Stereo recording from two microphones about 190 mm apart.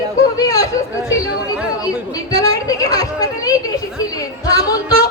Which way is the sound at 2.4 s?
20° left (ahead or behind).